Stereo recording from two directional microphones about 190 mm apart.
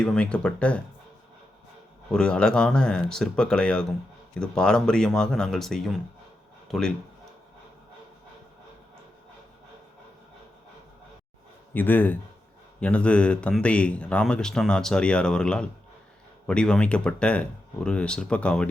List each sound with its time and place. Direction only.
0.0 s speech: 5° left (ahead or behind)
2.1 s speech: 5° left (ahead or behind)
11.7 s speech: 10° left (ahead or behind)